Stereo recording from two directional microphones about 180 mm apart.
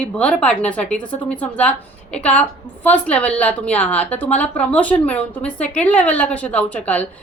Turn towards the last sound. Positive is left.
turn(degrees=10)  # may be behind; listen again after turning